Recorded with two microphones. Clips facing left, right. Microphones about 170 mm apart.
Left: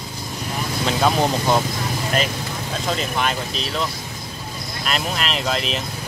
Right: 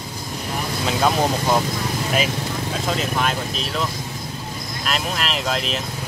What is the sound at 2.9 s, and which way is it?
Speech, centre (ahead or behind).